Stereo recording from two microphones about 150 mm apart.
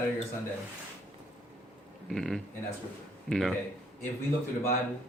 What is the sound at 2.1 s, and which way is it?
Speech, centre (ahead or behind).